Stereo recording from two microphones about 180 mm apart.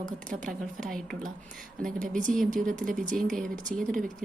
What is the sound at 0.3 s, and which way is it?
Speech, 45° right (ahead or behind).